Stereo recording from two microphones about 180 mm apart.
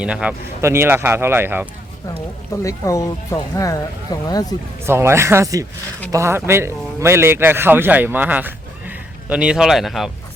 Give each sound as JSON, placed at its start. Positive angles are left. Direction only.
{"t": 0.0, "sound": "speech", "side_deg": -5}
{"t": 2.6, "sound": "speech", "side_deg": 15}
{"t": 4.9, "sound": "speech", "side_deg": -15}